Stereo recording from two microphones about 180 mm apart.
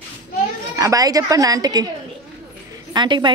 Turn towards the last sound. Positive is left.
turn(degrees=-25)  # may be behind; listen again after turning